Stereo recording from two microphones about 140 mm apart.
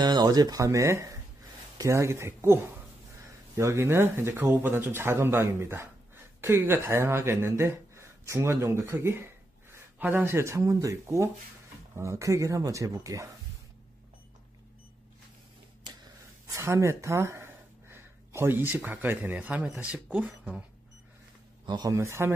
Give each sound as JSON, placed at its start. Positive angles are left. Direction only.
{"t": 0.0, "sound": "speech", "side_deg": -30}
{"t": 15.8, "sound": "speech", "side_deg": -30}
{"t": 21.6, "sound": "speech", "side_deg": -30}